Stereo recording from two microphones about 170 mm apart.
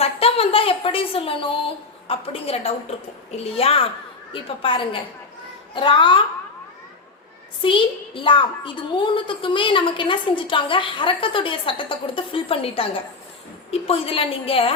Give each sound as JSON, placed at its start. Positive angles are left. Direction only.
{"t": 0.0, "sound": "a sound", "side_deg": 35}
{"t": 2.0, "sound": "a woman's voice", "side_deg": 35}
{"t": 7.6, "sound": "a child's voice", "side_deg": 30}